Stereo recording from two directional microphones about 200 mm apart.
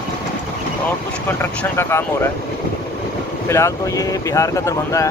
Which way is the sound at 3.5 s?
15° left (ahead or behind).